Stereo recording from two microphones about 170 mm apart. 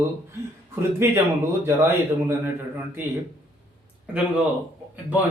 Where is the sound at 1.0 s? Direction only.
15° right (ahead or behind).